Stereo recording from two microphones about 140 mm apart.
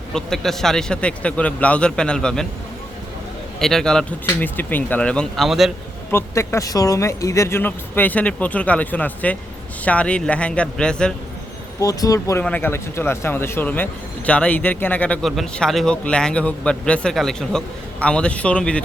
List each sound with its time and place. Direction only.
0.1 s a man's voice: 5° left (ahead or behind)
3.6 s a man's voice: 5° left (ahead or behind)
6.1 s speech: 20° left (ahead or behind)
11.8 s speech: 25° left (ahead or behind)
12.4 s speech: 10° left (ahead or behind)